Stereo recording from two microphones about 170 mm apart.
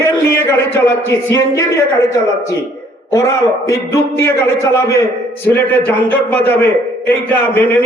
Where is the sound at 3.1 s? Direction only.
20° left (ahead or behind).